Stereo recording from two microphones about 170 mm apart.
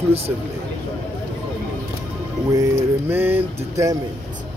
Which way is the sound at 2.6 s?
10° right (ahead or behind).